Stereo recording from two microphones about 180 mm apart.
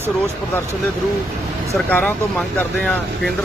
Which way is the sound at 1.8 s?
5° left (ahead or behind).